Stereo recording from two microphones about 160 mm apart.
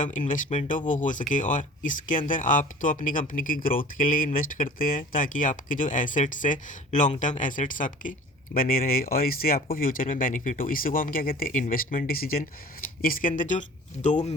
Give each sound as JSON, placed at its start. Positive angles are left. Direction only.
{"t": 0.0, "sound": "speech", "side_deg": 55}